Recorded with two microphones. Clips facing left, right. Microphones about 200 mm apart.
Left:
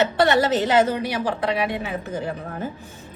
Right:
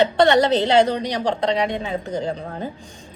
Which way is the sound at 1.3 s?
25° right (ahead or behind).